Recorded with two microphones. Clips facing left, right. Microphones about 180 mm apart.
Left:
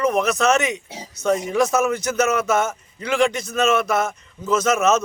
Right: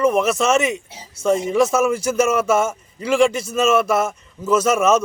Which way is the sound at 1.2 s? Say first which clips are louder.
Right 2 dB; 25° right (ahead or behind).